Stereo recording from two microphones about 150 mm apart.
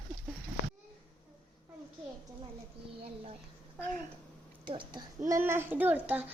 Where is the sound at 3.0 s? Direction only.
40° right (ahead or behind).